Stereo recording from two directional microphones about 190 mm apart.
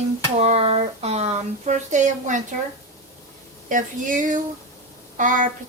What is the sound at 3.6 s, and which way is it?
A woman's voice, 45° right (ahead or behind).